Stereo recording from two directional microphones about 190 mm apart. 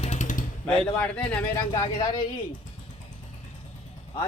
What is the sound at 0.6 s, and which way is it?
Speech, 5° left (ahead or behind).